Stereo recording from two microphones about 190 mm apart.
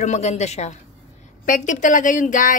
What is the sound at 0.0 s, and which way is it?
A woman's voice, 35° left (ahead or behind).